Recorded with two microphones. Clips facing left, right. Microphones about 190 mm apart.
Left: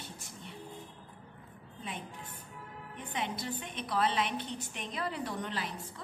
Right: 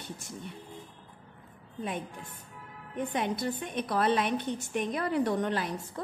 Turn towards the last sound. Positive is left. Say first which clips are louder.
# right 7 dB
turn(degrees=-45)  # may be behind; listen again after turning